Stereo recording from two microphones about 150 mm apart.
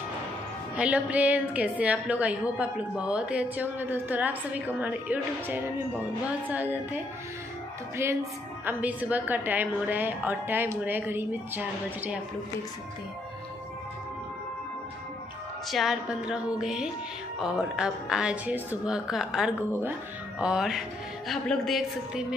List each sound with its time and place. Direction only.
0.7 s a woman's voice: 10° right (ahead or behind)
8.0 s a woman's voice: 15° right (ahead or behind)
15.7 s a woman's voice: centre (ahead or behind)
19.7 s a woman's voice: 15° right (ahead or behind); by 22.2 s centre (ahead or behind)